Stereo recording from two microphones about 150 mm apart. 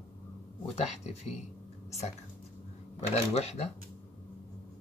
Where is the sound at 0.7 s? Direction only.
45° left (ahead or behind).